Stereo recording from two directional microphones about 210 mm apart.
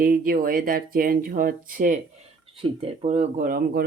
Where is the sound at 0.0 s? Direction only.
45° right (ahead or behind).